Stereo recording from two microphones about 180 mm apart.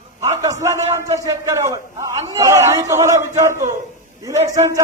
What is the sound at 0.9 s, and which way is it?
A man's voice, 20° right (ahead or behind).